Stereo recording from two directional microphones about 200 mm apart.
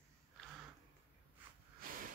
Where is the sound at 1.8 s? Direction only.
45° right (ahead or behind).